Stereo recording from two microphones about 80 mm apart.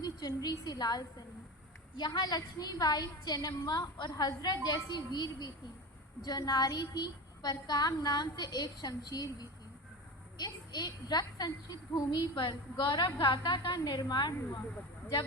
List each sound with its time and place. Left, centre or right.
0.0 s a woman's voice: left
10.3 s a woman's voice: left
13.7 s a woman's voice: left